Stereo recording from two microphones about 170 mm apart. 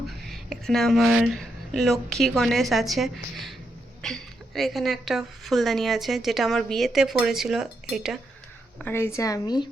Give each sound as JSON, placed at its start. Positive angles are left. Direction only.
{"t": 0.6, "sound": "a woman's voice", "side_deg": 0}
{"t": 8.8, "sound": "a woman's voice", "side_deg": 15}